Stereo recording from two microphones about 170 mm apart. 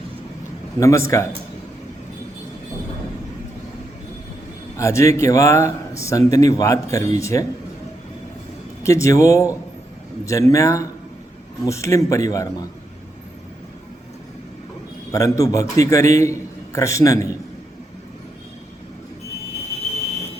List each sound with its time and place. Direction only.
0.8 s a man's voice: 15° left (ahead or behind)
4.8 s speech: 15° left (ahead or behind)
8.8 s speech: 15° left (ahead or behind)
15.1 s speech: 20° left (ahead or behind)